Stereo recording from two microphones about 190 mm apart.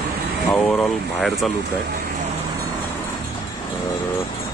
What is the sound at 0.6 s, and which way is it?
Speech, centre (ahead or behind).